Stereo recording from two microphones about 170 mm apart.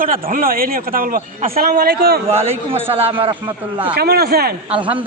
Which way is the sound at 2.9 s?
35° right (ahead or behind).